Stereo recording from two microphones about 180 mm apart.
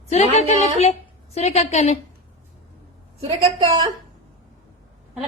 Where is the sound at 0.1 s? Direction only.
40° left (ahead or behind).